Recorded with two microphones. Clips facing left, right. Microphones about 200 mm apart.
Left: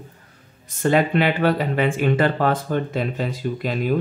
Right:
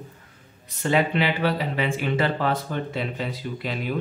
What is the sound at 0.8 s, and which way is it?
Speech, 50° left (ahead or behind).